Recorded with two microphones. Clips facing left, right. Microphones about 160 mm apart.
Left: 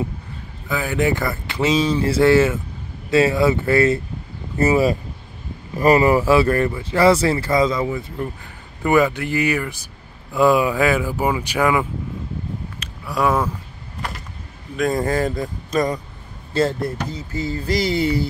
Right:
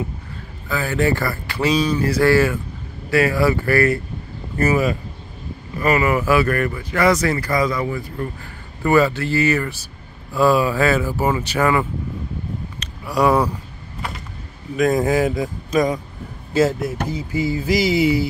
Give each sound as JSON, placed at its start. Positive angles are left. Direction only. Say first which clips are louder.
{"t": 0.7, "sound": "speech", "louder": "even", "side_deg": 15}
{"t": 12.8, "sound": "a sound", "louder": "right 3 dB", "side_deg": 0}
{"t": 14.8, "sound": "speech", "louder": "right 3 dB", "side_deg": 0}